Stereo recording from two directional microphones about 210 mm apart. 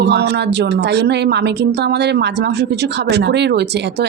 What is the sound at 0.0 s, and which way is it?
A woman's voice, 55° right (ahead or behind).